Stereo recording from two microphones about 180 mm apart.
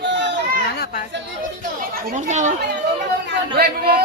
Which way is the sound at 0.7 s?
60° left (ahead or behind).